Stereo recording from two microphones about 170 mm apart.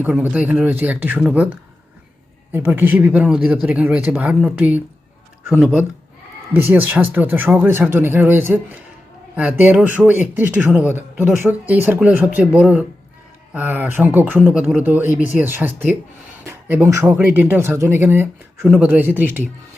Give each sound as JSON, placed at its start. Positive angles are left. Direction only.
{"t": 0.0, "sound": "speech", "side_deg": -10}